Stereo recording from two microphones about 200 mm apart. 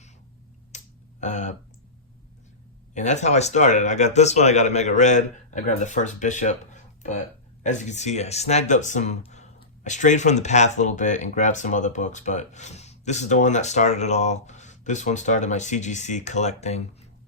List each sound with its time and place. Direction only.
0.7 s a sound: 35° left (ahead or behind)
1.2 s speech: 35° left (ahead or behind)
2.9 s speech: 35° left (ahead or behind)